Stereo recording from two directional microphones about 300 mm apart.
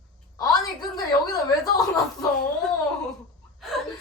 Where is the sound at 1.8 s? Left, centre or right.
Centre.